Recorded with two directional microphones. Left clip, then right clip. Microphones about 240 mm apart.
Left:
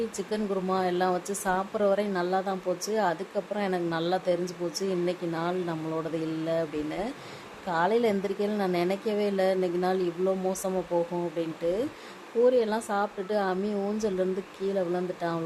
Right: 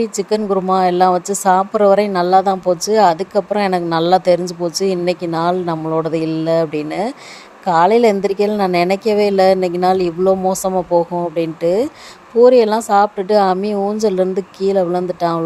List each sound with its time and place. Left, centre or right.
0.0 s a woman's voice: right